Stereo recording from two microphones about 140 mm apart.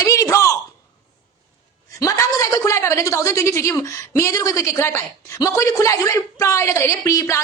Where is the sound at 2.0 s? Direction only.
25° left (ahead or behind).